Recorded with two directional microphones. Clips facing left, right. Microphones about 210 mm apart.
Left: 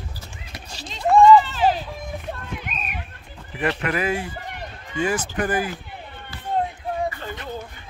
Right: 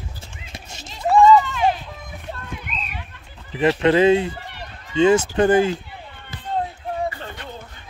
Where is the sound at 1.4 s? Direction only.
35° left (ahead or behind).